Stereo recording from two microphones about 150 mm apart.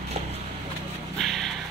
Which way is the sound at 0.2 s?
45° right (ahead or behind).